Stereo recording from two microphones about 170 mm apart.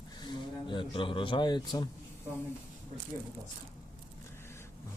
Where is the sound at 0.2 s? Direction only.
25° left (ahead or behind).